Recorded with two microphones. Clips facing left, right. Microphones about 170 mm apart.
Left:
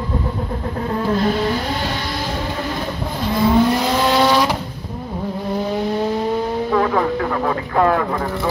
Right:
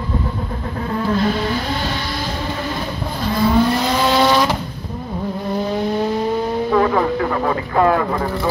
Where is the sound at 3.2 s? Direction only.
20° left (ahead or behind).